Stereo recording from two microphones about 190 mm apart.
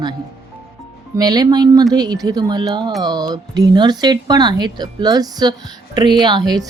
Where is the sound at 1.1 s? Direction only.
20° right (ahead or behind).